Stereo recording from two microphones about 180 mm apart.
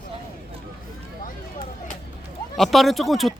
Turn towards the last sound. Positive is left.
turn(degrees=0)  # may be behind; listen again after turning